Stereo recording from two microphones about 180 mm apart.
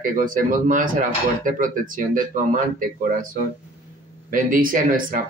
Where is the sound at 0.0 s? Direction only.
45° right (ahead or behind).